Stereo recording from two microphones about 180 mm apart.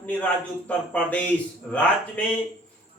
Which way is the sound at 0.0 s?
10° left (ahead or behind).